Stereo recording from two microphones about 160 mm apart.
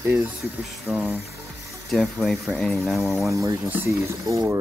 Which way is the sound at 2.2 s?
Centre (ahead or behind).